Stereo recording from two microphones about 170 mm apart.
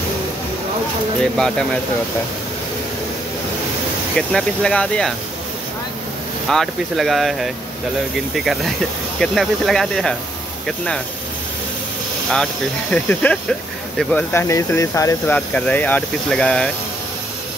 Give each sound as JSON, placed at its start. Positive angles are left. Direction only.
{"t": 1.2, "sound": "speech", "side_deg": 5}
{"t": 4.3, "sound": "speech", "side_deg": 5}
{"t": 6.5, "sound": "speech", "side_deg": 0}
{"t": 12.9, "sound": "speech", "side_deg": 10}
{"t": 14.3, "sound": "speech", "side_deg": 15}
{"t": 15.3, "sound": "speech", "side_deg": 10}